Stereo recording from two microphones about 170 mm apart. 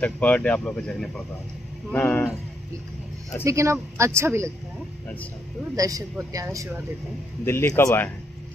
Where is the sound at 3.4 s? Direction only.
15° right (ahead or behind).